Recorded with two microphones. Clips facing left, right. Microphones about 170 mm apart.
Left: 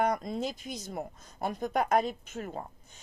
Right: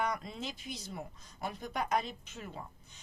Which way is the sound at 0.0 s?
45° left (ahead or behind).